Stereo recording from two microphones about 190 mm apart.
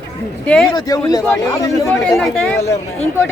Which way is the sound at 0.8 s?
20° left (ahead or behind).